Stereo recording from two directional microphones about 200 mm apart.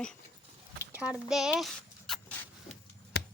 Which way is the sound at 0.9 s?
5° right (ahead or behind).